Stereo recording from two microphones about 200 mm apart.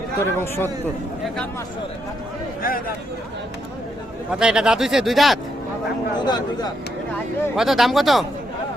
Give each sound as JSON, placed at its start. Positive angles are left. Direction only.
{"t": 0.2, "sound": "speech", "side_deg": 10}
{"t": 2.6, "sound": "speech", "side_deg": 45}
{"t": 4.3, "sound": "a man's voice", "side_deg": -5}
{"t": 6.2, "sound": "speech", "side_deg": 20}
{"t": 7.5, "sound": "a man's voice", "side_deg": 0}